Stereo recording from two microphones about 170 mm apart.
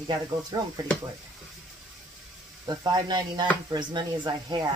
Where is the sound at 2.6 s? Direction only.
25° right (ahead or behind).